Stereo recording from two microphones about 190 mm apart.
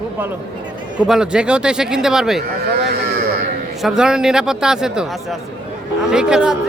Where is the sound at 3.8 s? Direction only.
5° right (ahead or behind).